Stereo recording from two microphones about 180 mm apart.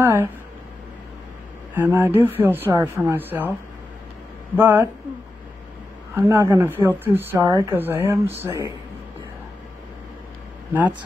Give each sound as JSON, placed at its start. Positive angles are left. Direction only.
{"t": 0.0, "sound": "a sound", "side_deg": -15}
{"t": 1.8, "sound": "speech", "side_deg": -15}
{"t": 4.6, "sound": "speech", "side_deg": -10}
{"t": 6.1, "sound": "speech", "side_deg": -15}
{"t": 10.7, "sound": "speech", "side_deg": -10}